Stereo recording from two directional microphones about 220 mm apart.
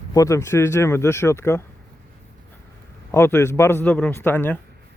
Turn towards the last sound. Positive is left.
turn(degrees=10)  # may be behind; listen again after turning